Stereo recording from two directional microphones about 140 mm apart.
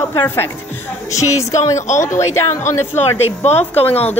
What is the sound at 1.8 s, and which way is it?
Speech, 60° left (ahead or behind).